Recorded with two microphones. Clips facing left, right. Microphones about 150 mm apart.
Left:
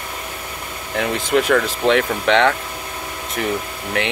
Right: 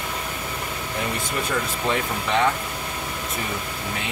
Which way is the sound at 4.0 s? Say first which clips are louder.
Left 14 dB; 75° left (ahead or behind).